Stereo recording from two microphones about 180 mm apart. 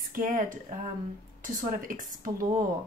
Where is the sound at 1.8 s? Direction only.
50° right (ahead or behind).